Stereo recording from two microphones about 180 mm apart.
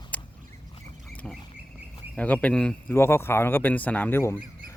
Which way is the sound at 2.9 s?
15° left (ahead or behind).